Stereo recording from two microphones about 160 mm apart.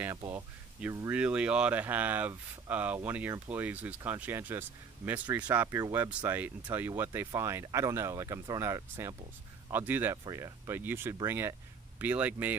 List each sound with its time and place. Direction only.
0.0 s speech: 15° right (ahead or behind)